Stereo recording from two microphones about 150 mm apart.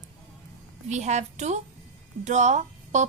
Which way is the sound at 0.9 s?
50° right (ahead or behind).